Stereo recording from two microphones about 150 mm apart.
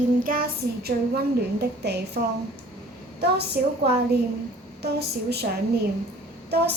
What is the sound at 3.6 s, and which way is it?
Speech, 80° right.